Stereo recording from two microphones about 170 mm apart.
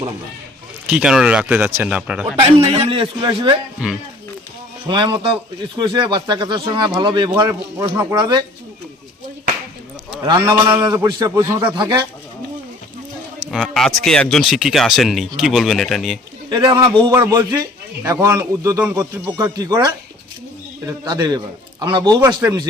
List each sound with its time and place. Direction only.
0.9 s speech: 5° right (ahead or behind)
2.7 s a man's voice: 35° right (ahead or behind)
4.9 s speech: 30° right (ahead or behind)
10.2 s speech: 30° right (ahead or behind)
13.4 s speech: 5° right (ahead or behind)
16.5 s speech: 25° right (ahead or behind)